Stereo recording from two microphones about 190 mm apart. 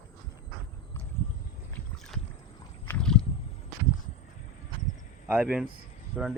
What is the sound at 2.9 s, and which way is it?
Rowboat, 5° left (ahead or behind).